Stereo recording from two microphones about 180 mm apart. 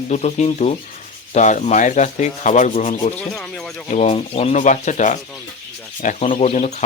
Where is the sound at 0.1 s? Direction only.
40° left (ahead or behind).